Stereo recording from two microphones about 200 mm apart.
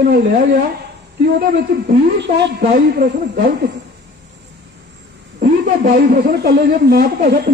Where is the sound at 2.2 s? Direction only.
50° right (ahead or behind).